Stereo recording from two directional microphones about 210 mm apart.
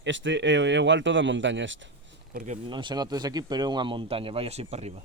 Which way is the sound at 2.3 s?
35° right (ahead or behind).